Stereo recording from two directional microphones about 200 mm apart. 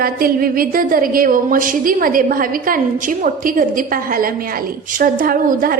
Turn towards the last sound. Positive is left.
turn(degrees=-45)  # may be behind; listen again after turning